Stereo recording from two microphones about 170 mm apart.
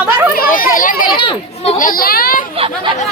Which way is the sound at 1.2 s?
35° left (ahead or behind).